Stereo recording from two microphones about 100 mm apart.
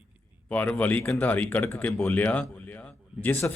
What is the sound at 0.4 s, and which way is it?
A man's voice, 15° left (ahead or behind).